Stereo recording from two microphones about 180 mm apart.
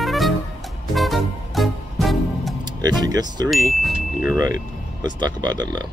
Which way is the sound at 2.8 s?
20° right (ahead or behind).